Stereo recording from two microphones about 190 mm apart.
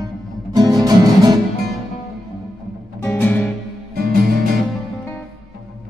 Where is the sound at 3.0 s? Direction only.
10° left (ahead or behind).